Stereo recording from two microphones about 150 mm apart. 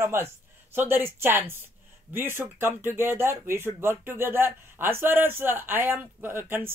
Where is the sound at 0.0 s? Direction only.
15° right (ahead or behind).